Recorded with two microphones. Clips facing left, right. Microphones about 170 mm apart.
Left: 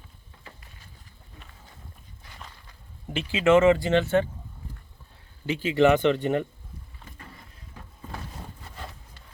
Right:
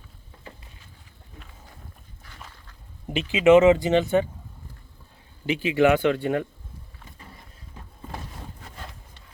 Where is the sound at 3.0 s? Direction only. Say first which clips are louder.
Right 4 dB; 20° right (ahead or behind).